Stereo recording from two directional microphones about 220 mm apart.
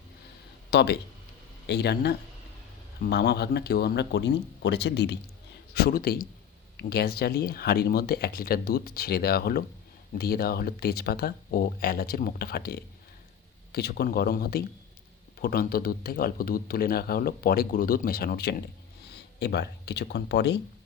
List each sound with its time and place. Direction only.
0.7 s speech: 50° left (ahead or behind)